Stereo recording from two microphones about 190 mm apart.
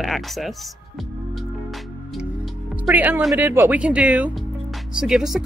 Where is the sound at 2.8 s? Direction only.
10° right (ahead or behind).